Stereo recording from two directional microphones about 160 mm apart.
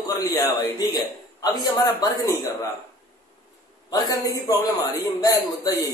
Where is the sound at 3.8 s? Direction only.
25° left (ahead or behind).